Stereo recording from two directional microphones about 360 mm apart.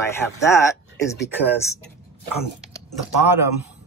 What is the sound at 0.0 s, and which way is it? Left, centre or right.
Speech, centre.